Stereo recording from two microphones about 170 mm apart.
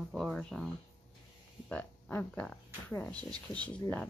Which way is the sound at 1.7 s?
10° left (ahead or behind).